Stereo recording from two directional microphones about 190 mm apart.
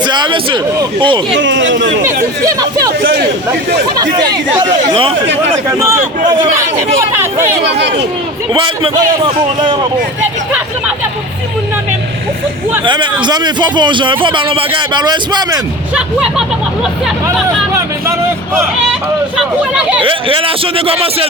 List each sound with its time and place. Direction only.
0.0 s a man's voice: 25° right (ahead or behind)
1.3 s speech: 75° right (ahead or behind)
3.0 s speech: 60° right (ahead or behind)
4.0 s a man's voice: 20° right (ahead or behind)
5.6 s a man's voice: 15° right (ahead or behind)
7.6 s speech: 65° right (ahead or behind)
8.5 s a man's voice: 25° right (ahead or behind)
12.8 s a man's voice: 25° right (ahead or behind)
16.0 s speech: 5° right (ahead or behind)
19.4 s speech: 5° right (ahead or behind)
20.0 s a man's voice: 25° right (ahead or behind)